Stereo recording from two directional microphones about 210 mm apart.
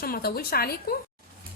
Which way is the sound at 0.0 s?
45° left (ahead or behind).